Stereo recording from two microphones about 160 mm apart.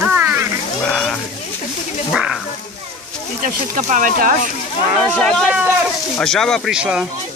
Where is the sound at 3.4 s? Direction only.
55° right (ahead or behind).